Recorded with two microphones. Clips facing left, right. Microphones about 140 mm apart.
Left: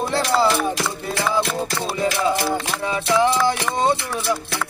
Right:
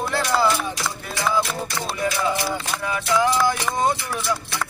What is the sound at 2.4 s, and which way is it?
Music, 25° left (ahead or behind).